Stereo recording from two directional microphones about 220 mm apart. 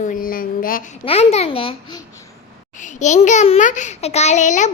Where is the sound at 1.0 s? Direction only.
25° left (ahead or behind).